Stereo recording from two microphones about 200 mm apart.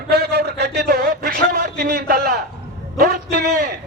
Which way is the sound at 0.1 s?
55° right (ahead or behind).